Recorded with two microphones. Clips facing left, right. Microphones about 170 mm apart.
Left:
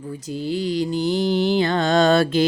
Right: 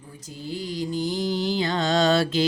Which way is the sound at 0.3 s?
80° left.